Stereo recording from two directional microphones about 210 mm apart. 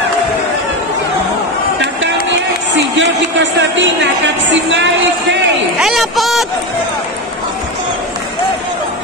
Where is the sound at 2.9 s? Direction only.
60° right (ahead or behind).